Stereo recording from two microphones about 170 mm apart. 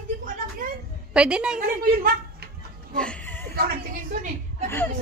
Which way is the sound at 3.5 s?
55° right (ahead or behind).